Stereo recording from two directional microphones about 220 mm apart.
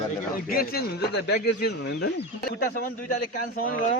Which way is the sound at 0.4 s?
45° left (ahead or behind).